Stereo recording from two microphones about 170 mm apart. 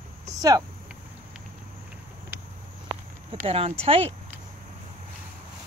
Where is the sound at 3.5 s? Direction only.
35° right (ahead or behind).